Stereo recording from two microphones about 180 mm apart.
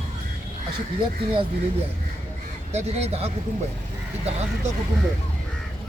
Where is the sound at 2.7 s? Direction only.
35° right (ahead or behind).